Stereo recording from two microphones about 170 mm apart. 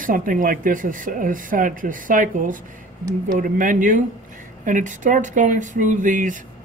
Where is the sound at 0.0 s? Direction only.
55° right (ahead or behind).